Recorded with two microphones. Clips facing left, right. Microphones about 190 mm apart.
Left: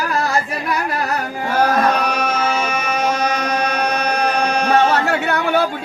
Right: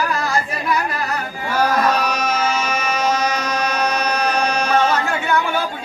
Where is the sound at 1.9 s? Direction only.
55° left (ahead or behind).